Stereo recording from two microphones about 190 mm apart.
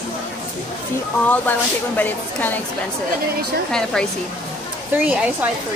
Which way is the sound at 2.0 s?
10° left (ahead or behind).